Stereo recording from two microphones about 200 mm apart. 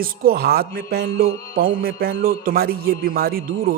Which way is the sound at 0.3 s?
50° right (ahead or behind).